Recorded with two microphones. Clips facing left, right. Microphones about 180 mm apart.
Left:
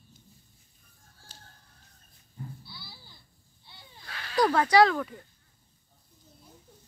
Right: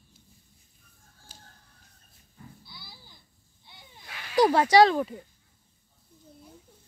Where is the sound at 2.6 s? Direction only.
20° right (ahead or behind).